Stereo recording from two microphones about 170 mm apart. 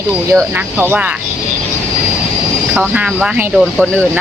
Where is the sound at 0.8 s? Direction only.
10° right (ahead or behind).